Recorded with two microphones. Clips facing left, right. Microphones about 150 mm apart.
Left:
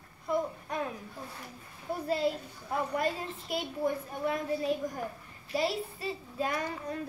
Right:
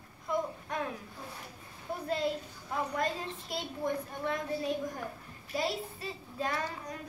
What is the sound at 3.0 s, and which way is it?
A woman's voice, 10° left (ahead or behind).